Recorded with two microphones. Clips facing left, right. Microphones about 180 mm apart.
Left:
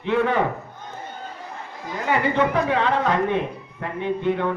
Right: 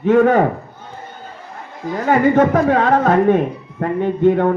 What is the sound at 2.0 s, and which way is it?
Speech, 45° right (ahead or behind).